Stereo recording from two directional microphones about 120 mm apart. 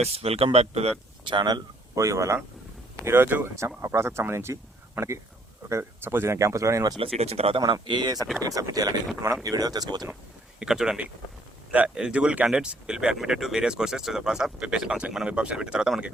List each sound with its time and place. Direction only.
0.0 s speech: 55° right (ahead or behind)
1.3 s speech: 40° right (ahead or behind)
2.0 s speech: 25° right (ahead or behind)
7.0 s speech: 55° right (ahead or behind)
7.6 s speech: 40° right (ahead or behind)
10.6 s speech: 5° right (ahead or behind)